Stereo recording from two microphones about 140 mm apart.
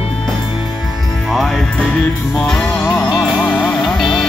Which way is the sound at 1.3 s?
Centre (ahead or behind).